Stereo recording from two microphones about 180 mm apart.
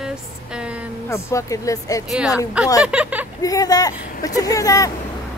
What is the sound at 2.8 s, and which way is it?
Speech, 5° right (ahead or behind).